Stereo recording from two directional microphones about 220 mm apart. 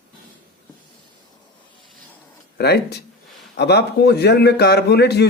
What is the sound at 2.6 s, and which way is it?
A man's voice, 50° left (ahead or behind).